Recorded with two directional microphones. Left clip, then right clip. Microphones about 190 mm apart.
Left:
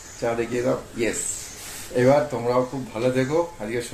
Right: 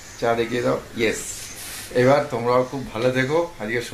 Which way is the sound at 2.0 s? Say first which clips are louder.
Right 1 dB; 10° right (ahead or behind).